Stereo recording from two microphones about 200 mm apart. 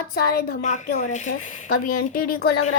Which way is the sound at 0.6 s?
40° left (ahead or behind).